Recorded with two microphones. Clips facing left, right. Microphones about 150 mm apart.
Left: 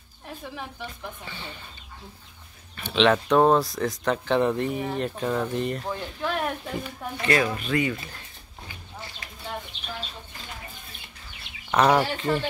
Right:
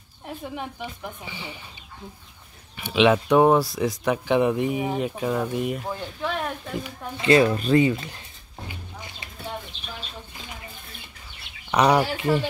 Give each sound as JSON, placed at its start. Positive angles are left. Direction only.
{"t": 0.6, "sound": "speech", "side_deg": -15}
{"t": 2.7, "sound": "speech", "side_deg": -10}
{"t": 7.2, "sound": "speech", "side_deg": -25}
{"t": 11.7, "sound": "speech", "side_deg": -15}